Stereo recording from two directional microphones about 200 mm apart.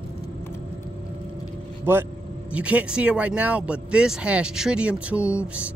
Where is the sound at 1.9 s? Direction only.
10° right (ahead or behind).